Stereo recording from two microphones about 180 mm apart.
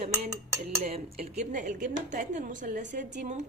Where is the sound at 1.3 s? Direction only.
45° right (ahead or behind).